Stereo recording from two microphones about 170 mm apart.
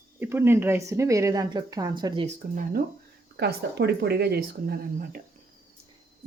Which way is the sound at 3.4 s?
75° right (ahead or behind).